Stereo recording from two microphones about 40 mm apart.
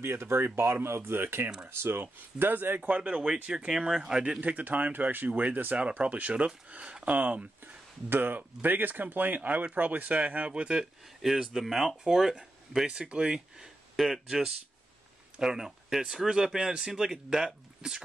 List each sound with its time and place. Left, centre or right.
0.0 s speech: right
1.2 s speech: right
1.7 s speech: right
2.9 s speech: right
3.5 s speech: centre
4.4 s speech: right
5.8 s speech: right
7.6 s a sound: right
8.6 s speech: right
11.3 s speech: centre
12.0 s speech: centre
13.9 s speech: centre
15.4 s speech: centre